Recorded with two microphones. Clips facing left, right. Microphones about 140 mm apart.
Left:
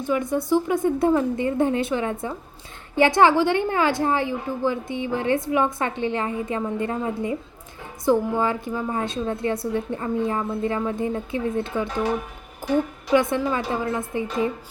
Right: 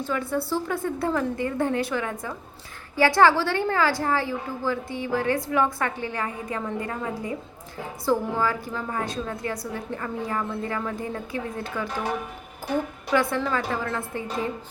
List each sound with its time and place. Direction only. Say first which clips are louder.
0.0 s a woman's voice: left 4 dB; 15° left (ahead or behind)
13.1 s a woman's voice: left 3 dB; 20° left (ahead or behind)